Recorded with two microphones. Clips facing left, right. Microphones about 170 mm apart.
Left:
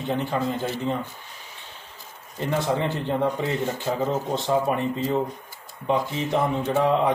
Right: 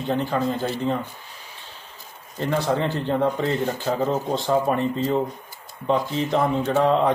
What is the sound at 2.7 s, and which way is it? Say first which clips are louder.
Speech: right 2 dB; 15° left (ahead or behind).